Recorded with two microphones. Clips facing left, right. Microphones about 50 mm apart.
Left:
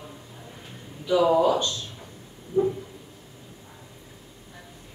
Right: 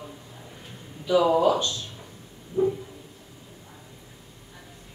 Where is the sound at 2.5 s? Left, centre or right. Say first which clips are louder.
Left 1 dB; left.